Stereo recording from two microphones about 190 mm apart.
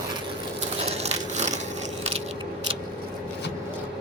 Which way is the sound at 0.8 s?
35° right (ahead or behind).